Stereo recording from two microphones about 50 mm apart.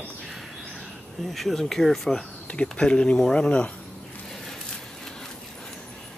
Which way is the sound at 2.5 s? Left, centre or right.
Centre.